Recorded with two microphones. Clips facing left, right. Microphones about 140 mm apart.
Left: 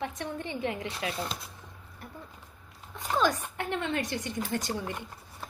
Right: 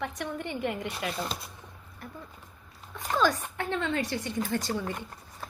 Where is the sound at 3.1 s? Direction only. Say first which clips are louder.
Right 1 dB; 20° left (ahead or behind).